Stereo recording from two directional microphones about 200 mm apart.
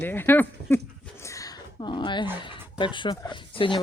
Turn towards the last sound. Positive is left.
turn(degrees=25)  # may be behind; listen again after turning